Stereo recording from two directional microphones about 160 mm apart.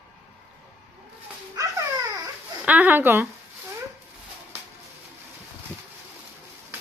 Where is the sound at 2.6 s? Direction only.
10° right (ahead or behind).